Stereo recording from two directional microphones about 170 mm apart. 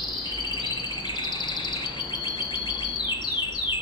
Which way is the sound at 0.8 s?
25° left (ahead or behind).